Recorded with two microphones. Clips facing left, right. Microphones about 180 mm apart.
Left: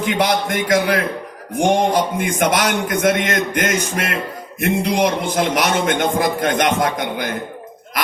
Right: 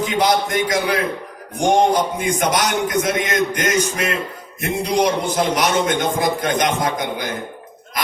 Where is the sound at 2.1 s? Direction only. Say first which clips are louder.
Left 1 dB; 55° left (ahead or behind).